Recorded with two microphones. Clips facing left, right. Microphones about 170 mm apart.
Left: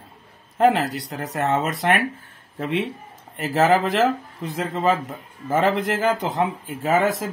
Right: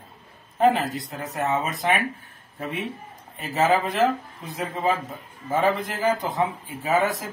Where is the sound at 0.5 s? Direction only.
90° left.